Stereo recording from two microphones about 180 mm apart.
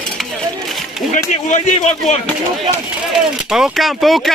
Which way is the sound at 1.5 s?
40° left (ahead or behind).